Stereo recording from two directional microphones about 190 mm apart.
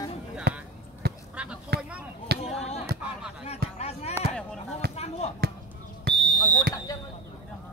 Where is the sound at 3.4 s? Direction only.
35° left (ahead or behind).